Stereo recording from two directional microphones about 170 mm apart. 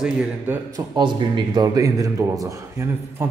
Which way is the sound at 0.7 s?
25° right (ahead or behind).